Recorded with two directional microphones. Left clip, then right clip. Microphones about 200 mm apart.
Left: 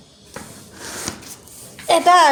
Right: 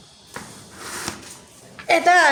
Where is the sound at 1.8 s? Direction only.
15° left (ahead or behind).